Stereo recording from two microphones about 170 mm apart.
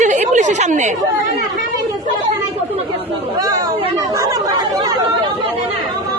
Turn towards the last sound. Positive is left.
turn(degrees=-20)  # may be behind; listen again after turning